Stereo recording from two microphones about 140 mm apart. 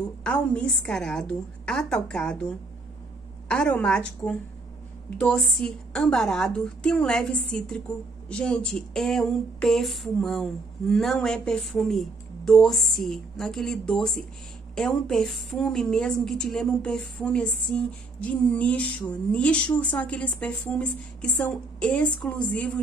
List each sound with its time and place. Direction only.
0.2 s a woman's voice: 10° left (ahead or behind)
3.4 s a woman's voice: 10° left (ahead or behind)
5.2 s a sound: centre (ahead or behind)
14.8 s a woman's voice: 5° left (ahead or behind)